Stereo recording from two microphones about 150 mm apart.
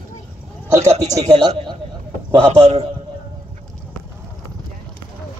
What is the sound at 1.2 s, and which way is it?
Speech, 30° right (ahead or behind).